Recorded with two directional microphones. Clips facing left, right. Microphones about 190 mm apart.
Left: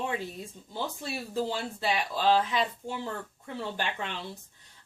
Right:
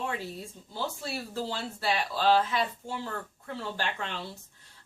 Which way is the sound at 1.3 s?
15° left (ahead or behind).